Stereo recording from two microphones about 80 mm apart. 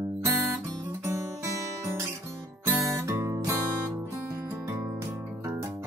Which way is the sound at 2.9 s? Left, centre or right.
Right.